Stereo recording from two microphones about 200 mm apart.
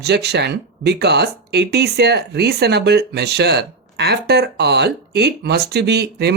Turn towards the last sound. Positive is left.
turn(degrees=-55)  # may be behind; listen again after turning